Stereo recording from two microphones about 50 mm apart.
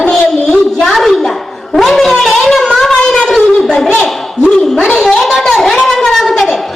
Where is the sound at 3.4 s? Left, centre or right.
Centre.